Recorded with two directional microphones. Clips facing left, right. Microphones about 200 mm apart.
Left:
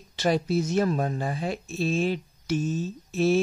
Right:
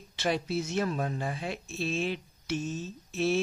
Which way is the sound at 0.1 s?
40° left (ahead or behind).